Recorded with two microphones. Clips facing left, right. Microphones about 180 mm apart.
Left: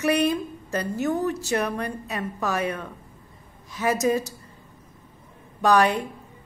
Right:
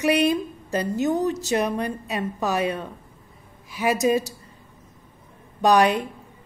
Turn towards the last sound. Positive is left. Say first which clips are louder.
# right 2 dB
turn(degrees=-15)  # may be behind; listen again after turning